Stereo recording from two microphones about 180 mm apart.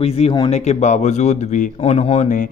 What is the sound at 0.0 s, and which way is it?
Speech, 35° left (ahead or behind).